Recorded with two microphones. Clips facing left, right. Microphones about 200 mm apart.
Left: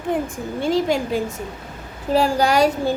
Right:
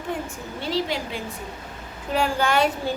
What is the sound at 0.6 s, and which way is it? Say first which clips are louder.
A woman's voice: left 7 dB; 50° left (ahead or behind).